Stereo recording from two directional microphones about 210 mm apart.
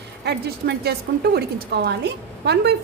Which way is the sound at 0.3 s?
50° right (ahead or behind).